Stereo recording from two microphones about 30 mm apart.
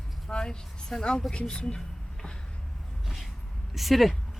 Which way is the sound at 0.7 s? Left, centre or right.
Left.